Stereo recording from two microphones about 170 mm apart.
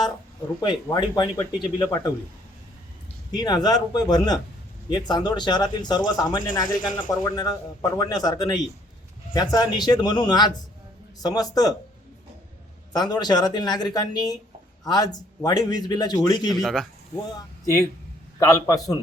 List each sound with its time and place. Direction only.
0.6 s speech: 25° left (ahead or behind)
3.3 s speech: 25° left (ahead or behind)
12.9 s speech: 25° left (ahead or behind)
16.5 s speech: centre (ahead or behind)
17.3 s speech: 20° left (ahead or behind)